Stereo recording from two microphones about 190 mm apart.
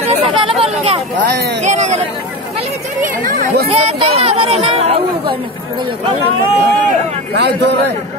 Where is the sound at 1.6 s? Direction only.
40° right (ahead or behind).